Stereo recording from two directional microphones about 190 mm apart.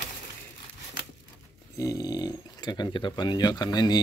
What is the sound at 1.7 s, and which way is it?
Speech, 20° left (ahead or behind).